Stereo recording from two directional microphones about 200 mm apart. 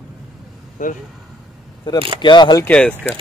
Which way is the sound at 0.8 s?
40° left (ahead or behind).